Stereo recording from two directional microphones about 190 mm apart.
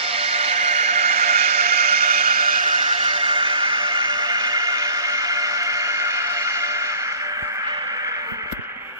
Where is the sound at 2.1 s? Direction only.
50° right (ahead or behind).